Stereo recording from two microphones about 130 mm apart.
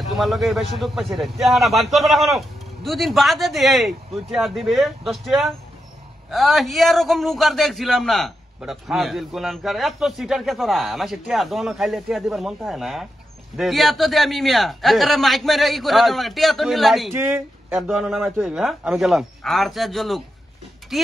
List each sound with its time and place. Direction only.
0.1 s a man's voice: centre (ahead or behind)
17.1 s speech: 15° right (ahead or behind)
17.7 s a man's voice: centre (ahead or behind)